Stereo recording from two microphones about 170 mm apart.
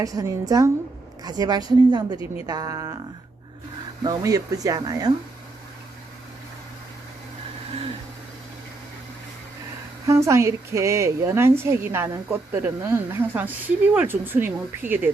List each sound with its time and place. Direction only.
0.0 s speech: 20° right (ahead or behind)
4.0 s speech: 20° right (ahead or behind)
10.1 s a woman's voice: 15° right (ahead or behind)